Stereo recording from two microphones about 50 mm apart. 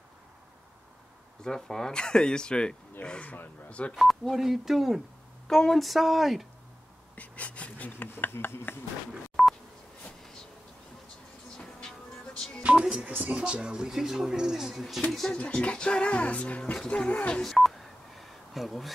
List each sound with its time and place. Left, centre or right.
1.4 s speech: centre
3.9 s speech: centre
5.5 s speech: centre
5.9 s speech: centre
7.2 s a sound: left
8.3 s speech: left
9.4 s telephone dialing: centre
11.5 s train: centre
12.7 s music: right
13.1 s speech: right
13.4 s speech: right; by 15.3 s centre
15.3 s speech: left
17.4 s telephone dialing: centre